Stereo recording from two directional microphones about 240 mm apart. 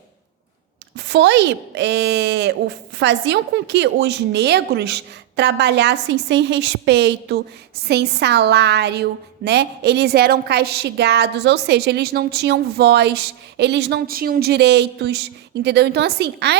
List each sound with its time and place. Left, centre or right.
0.9 s a woman's voice: right